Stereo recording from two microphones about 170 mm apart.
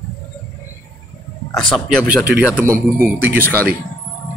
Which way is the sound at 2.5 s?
15° right (ahead or behind).